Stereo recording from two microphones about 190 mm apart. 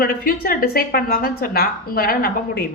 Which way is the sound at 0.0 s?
50° left (ahead or behind).